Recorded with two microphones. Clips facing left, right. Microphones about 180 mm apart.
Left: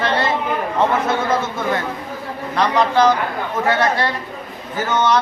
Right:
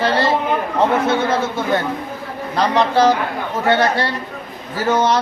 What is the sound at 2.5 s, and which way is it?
A man's voice, 35° right (ahead or behind).